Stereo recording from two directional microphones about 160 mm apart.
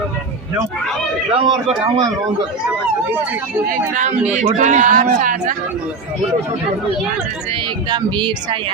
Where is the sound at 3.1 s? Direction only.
10° right (ahead or behind).